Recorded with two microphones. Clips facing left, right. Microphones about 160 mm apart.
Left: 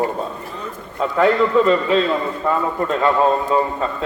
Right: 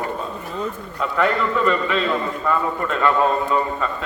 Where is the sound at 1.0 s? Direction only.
30° left (ahead or behind).